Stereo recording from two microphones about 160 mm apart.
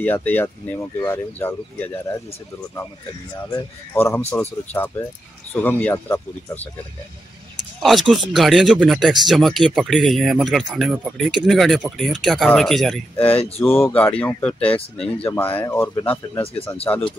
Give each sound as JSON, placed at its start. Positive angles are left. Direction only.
{"t": 0.0, "sound": "speech", "side_deg": 10}
{"t": 3.5, "sound": "speech", "side_deg": 15}
{"t": 7.8, "sound": "speech", "side_deg": 0}
{"t": 13.6, "sound": "speech", "side_deg": 15}